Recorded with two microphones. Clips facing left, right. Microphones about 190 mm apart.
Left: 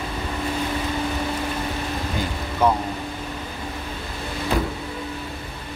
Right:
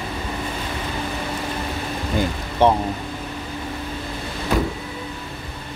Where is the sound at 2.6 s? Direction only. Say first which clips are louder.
Right 3 dB; 30° right (ahead or behind).